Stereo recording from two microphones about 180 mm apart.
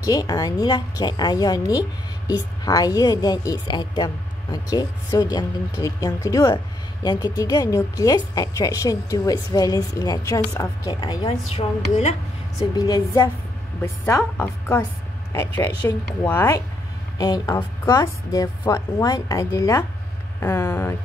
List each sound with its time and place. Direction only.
0.0 s a woman's voice: 20° left (ahead or behind)
11.9 s speech: 35° left (ahead or behind)
12.7 s a woman's voice: 20° left (ahead or behind)